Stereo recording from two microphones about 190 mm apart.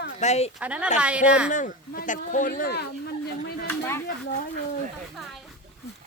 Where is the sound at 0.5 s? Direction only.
5° right (ahead or behind).